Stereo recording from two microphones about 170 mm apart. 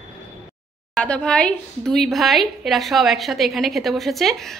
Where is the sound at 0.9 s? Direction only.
5° left (ahead or behind).